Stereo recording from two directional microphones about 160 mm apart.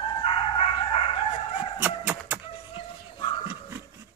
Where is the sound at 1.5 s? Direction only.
10° right (ahead or behind).